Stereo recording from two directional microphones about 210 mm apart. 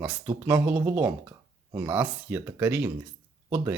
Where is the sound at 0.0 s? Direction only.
10° right (ahead or behind).